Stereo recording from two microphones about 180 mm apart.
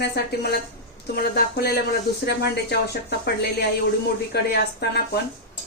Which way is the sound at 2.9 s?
65° left (ahead or behind).